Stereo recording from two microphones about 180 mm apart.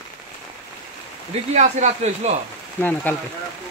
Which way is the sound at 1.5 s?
40° right (ahead or behind).